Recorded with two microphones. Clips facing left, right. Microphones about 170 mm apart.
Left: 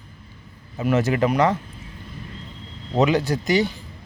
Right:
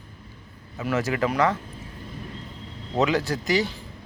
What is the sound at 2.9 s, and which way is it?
Speech, 20° left (ahead or behind).